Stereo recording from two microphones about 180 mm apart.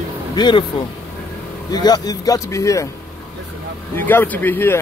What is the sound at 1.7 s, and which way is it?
A man's voice, 20° left (ahead or behind).